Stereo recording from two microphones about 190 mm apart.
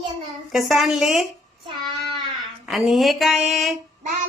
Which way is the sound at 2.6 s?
Centre (ahead or behind).